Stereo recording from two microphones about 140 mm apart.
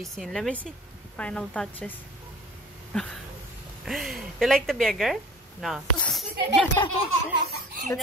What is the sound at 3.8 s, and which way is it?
A woman's voice, centre (ahead or behind).